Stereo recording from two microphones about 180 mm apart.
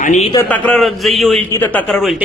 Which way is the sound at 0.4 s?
10° left (ahead or behind).